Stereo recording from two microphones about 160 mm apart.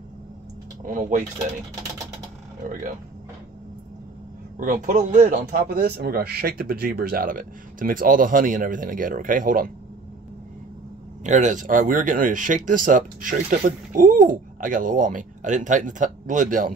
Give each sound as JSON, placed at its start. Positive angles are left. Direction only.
{"t": 0.8, "sound": "speech", "side_deg": -55}
{"t": 4.6, "sound": "speech", "side_deg": -55}
{"t": 11.2, "sound": "speech", "side_deg": -50}